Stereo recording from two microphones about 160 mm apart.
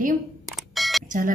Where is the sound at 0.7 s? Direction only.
Centre (ahead or behind).